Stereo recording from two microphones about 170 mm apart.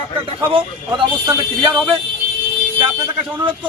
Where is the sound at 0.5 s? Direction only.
25° right (ahead or behind).